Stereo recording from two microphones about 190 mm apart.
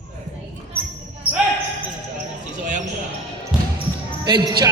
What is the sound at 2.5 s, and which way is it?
Basketball bounce, 40° right (ahead or behind).